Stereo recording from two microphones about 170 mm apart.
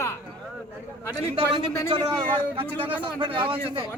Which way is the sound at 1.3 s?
30° right (ahead or behind).